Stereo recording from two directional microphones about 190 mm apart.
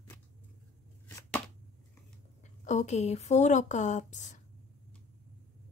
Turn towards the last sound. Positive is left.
turn(degrees=40)  # may be behind; listen again after turning